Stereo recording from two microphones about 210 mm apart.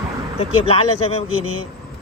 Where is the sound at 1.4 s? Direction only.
75° right (ahead or behind).